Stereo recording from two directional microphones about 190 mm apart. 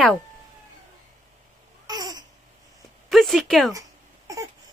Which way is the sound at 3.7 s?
20° right (ahead or behind).